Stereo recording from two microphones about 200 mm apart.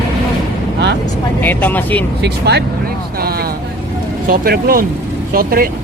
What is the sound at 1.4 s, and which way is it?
Speech, 10° left (ahead or behind).